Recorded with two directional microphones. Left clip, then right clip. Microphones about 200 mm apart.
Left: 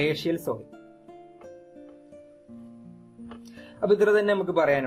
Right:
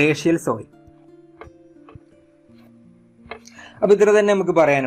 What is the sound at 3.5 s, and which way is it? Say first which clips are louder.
A man's voice: right 7 dB; 30° right (ahead or behind).